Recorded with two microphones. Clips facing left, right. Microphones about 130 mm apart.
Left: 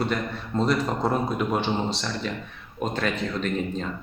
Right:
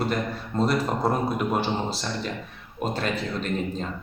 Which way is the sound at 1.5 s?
40° right (ahead or behind).